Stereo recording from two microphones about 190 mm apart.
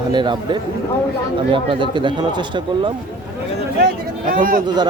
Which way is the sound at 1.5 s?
25° right (ahead or behind).